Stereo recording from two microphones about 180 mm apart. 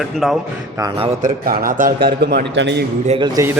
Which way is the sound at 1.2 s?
50° right (ahead or behind).